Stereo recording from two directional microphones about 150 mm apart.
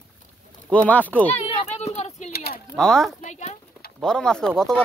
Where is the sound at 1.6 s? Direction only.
45° left (ahead or behind).